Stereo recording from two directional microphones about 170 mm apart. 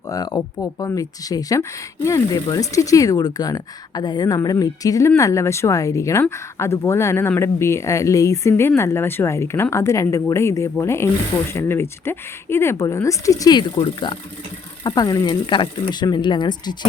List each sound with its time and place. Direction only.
0.1 s speech: 20° left (ahead or behind)